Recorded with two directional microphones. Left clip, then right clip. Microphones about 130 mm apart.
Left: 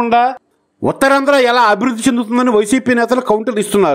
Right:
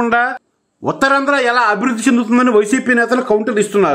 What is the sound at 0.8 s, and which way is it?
A man's voice, 45° left (ahead or behind).